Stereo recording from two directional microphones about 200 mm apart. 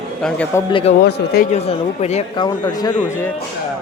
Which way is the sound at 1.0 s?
55° left (ahead or behind).